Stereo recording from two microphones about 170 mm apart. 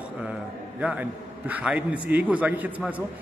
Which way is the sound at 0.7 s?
5° right (ahead or behind).